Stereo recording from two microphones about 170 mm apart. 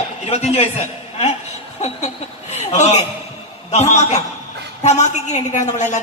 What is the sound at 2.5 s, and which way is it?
A man's voice, 40° left (ahead or behind).